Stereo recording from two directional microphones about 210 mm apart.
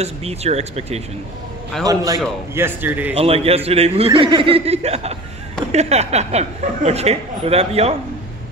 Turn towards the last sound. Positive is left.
turn(degrees=-30)  # may be behind; listen again after turning